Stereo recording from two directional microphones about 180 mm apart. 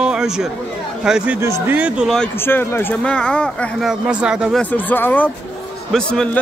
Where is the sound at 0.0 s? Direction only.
5° right (ahead or behind).